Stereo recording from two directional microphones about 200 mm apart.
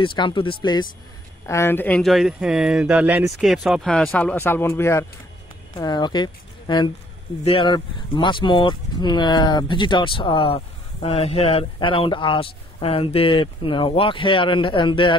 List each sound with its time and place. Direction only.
0.0 s speech: 25° left (ahead or behind)
1.5 s speech: 10° left (ahead or behind)